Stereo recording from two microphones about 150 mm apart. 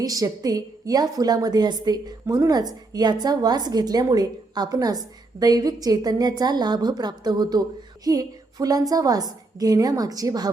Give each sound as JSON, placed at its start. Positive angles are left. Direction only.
{"t": 0.0, "sound": "a woman's voice", "side_deg": -25}